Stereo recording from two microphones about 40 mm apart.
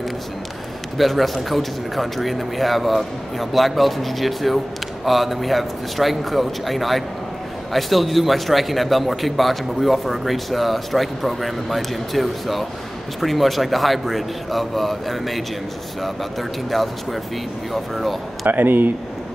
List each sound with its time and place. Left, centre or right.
0.9 s a man's voice: centre
18.5 s speech: right